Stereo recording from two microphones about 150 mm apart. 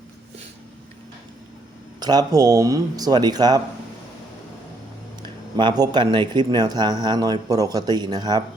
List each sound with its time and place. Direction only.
2.0 s speech: 25° right (ahead or behind)
5.2 s speech: 30° right (ahead or behind)